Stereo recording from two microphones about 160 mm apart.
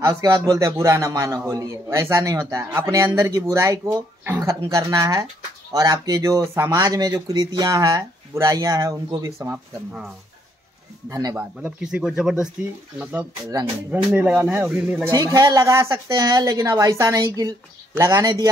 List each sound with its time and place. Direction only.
0.0 s a man's voice: 20° right (ahead or behind)
9.5 s speech: 5° right (ahead or behind)
11.1 s a man's voice: 20° right (ahead or behind)
11.6 s speech: 5° right (ahead or behind)
15.0 s a man's voice: 25° right (ahead or behind)